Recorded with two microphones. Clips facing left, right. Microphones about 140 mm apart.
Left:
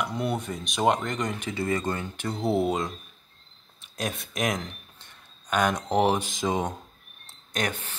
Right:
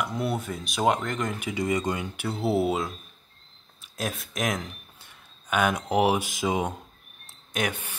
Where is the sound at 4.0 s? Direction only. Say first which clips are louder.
Left 1 dB; centre (ahead or behind).